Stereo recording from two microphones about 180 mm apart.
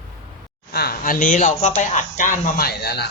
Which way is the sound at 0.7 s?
60° left (ahead or behind).